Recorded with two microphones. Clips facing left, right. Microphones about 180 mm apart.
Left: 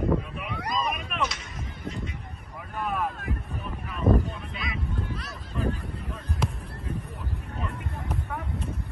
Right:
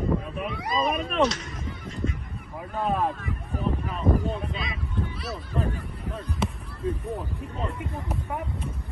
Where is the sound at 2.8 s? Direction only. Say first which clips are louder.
Right 4 dB; 30° right (ahead or behind).